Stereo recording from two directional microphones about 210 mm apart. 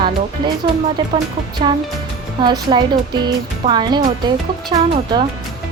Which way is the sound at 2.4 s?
20° right (ahead or behind).